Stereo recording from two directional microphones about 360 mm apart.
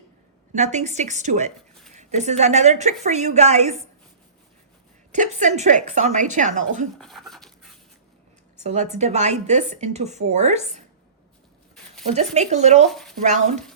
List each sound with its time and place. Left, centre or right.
0.5 s speech: centre
5.1 s speech: centre
7.0 s a sound: centre
8.6 s speech: centre
12.0 s speech: centre
12.9 s speech: centre
13.2 s speech: centre